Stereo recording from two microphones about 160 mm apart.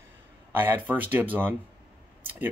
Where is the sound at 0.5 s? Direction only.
10° right (ahead or behind).